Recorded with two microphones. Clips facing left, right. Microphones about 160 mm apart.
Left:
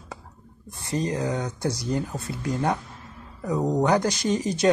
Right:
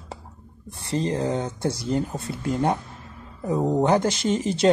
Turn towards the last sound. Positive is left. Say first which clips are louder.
# right 2 dB
turn(degrees=-25)  # may be behind; listen again after turning